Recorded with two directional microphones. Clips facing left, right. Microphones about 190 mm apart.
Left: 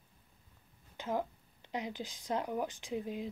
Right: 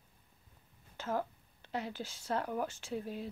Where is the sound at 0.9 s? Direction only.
15° left (ahead or behind).